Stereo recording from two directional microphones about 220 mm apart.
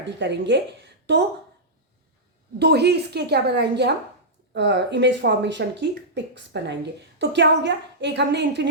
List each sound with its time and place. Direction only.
0.0 s speech: 55° right (ahead or behind)
2.6 s speech: 50° right (ahead or behind)